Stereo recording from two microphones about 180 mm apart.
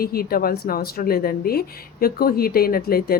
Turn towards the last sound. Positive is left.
turn(degrees=55)  # may be behind; listen again after turning